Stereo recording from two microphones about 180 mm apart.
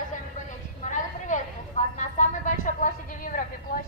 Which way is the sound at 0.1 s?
45° left (ahead or behind).